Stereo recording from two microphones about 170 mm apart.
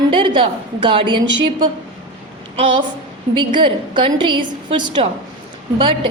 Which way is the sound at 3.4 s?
30° right (ahead or behind).